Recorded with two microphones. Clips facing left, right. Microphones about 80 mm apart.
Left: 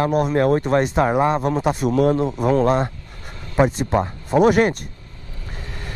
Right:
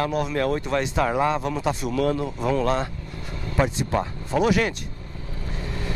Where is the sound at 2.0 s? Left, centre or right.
Left.